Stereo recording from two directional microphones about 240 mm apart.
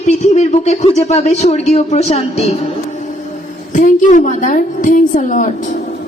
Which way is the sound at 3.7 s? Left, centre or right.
Left.